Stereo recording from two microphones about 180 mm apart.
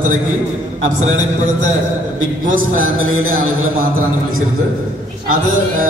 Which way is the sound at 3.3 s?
55° right (ahead or behind).